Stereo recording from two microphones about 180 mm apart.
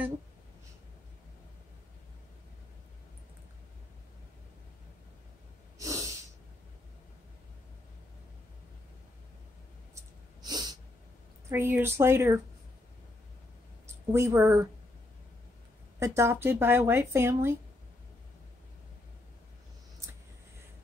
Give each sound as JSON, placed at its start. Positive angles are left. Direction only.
{"t": 5.8, "sound": "snort", "side_deg": -20}
{"t": 10.4, "sound": "sneeze", "side_deg": -20}
{"t": 11.4, "sound": "speech", "side_deg": -15}
{"t": 13.8, "sound": "a woman's voice", "side_deg": -15}
{"t": 16.0, "sound": "speech", "side_deg": -15}